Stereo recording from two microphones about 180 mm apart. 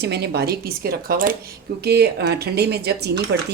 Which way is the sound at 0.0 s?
70° right (ahead or behind).